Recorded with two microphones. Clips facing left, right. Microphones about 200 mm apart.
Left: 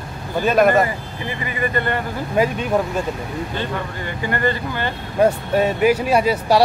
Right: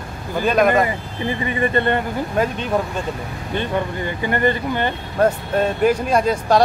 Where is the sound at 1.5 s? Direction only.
25° right (ahead or behind).